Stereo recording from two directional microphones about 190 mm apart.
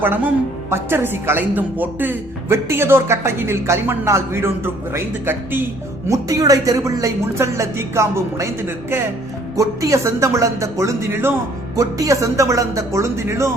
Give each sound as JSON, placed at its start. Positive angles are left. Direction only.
{"t": 0.0, "sound": "speech", "side_deg": -10}